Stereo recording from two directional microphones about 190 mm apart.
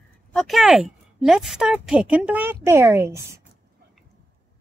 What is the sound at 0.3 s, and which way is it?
A woman's voice, centre (ahead or behind).